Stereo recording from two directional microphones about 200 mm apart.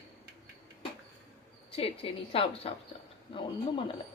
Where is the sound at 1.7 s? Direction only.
25° left (ahead or behind).